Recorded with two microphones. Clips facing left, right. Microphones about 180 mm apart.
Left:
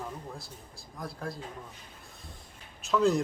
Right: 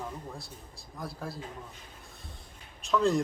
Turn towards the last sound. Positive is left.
turn(degrees=0)  # may be behind; listen again after turning